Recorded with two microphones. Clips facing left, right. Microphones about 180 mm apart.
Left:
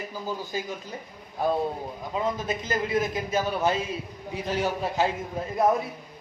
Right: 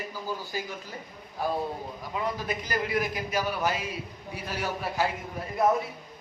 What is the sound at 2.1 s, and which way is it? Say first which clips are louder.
A man's voice: left 3 dB; 25° left (ahead or behind).